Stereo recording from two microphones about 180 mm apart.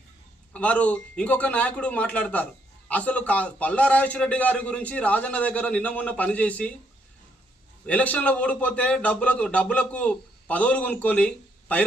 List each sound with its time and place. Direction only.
0.5 s a man's voice: 5° left (ahead or behind)
7.9 s a man's voice: 10° left (ahead or behind)